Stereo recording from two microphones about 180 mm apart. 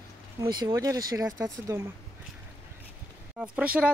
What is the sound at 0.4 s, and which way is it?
Speech, 25° right (ahead or behind).